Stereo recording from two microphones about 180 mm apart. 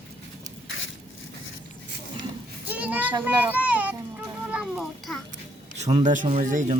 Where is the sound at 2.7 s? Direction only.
10° right (ahead or behind).